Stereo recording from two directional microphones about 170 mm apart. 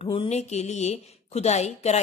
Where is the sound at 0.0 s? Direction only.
35° left (ahead or behind).